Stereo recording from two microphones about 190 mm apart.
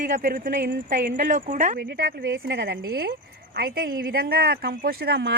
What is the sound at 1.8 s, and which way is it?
Speech, 55° right (ahead or behind).